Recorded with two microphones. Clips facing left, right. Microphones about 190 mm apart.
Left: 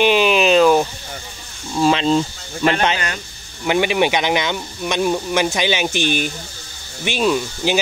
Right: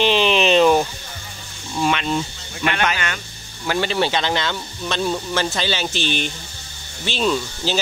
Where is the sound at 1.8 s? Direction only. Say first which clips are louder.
Left 5 dB; 30° left (ahead or behind).